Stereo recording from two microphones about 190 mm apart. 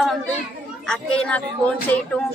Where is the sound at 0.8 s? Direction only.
5° left (ahead or behind).